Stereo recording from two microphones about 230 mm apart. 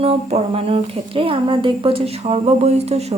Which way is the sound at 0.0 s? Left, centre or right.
Right.